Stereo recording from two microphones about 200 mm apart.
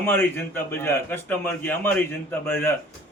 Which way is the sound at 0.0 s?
10° left (ahead or behind).